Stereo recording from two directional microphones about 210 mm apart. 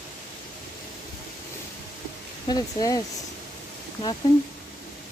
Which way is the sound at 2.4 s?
20° left (ahead or behind).